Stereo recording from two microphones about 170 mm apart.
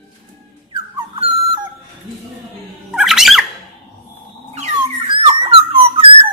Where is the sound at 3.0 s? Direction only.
Centre (ahead or behind).